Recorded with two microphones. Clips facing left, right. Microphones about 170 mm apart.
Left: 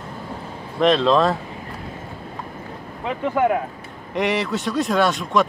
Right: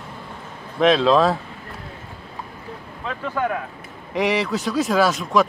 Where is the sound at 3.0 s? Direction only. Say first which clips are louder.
Left 5 dB; 20° left (ahead or behind).